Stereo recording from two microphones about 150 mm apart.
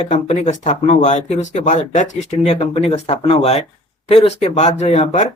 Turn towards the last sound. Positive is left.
turn(degrees=50)  # may be behind; listen again after turning